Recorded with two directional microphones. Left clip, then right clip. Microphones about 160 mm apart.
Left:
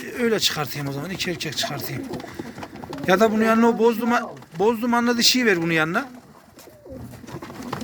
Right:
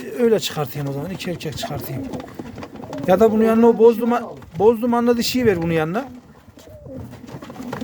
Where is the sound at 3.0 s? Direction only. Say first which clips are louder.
Right 3 dB; 20° right (ahead or behind).